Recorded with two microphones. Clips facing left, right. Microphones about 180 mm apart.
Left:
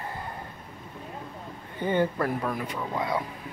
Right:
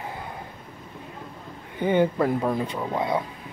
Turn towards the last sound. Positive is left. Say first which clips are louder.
# right 3 dB
turn(degrees=-25)  # may be behind; listen again after turning